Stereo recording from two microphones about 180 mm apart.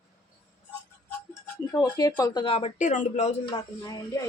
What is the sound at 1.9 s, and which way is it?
Speech, 20° left (ahead or behind).